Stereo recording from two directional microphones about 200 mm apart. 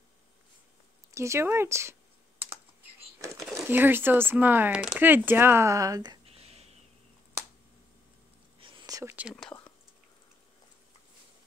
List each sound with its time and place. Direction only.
1.1 s speech: 15° right (ahead or behind)
3.3 s speech: 5° right (ahead or behind)
6.2 s a sound: 30° right (ahead or behind)
8.5 s whispering: 20° right (ahead or behind)